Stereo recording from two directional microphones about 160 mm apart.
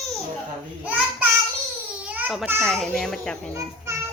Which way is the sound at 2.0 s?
10° right (ahead or behind).